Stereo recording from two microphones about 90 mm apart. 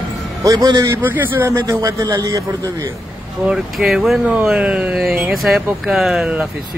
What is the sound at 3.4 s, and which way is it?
Speech, 5° right (ahead or behind).